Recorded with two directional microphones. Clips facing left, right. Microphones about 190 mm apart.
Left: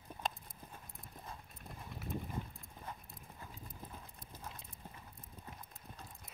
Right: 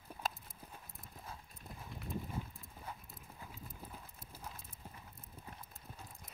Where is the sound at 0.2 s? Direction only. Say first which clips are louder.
Even; 5° right (ahead or behind).